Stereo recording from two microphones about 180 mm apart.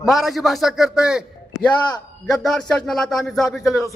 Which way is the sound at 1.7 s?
20° left (ahead or behind).